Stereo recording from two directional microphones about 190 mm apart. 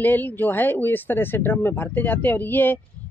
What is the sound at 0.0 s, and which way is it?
Speech, 10° left (ahead or behind).